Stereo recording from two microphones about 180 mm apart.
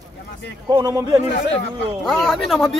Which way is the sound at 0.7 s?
15° right (ahead or behind).